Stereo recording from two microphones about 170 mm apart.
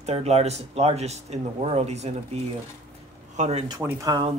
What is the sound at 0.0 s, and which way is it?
Speech, 40° right (ahead or behind).